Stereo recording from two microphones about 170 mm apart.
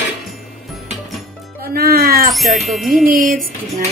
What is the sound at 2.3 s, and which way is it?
Speech, centre (ahead or behind).